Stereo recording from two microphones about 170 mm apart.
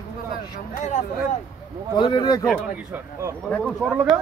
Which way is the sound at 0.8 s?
45° left (ahead or behind).